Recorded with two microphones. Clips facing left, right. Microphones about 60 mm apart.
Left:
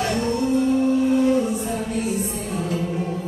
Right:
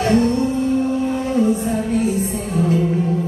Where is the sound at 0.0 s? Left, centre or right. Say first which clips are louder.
Right 7 dB; right.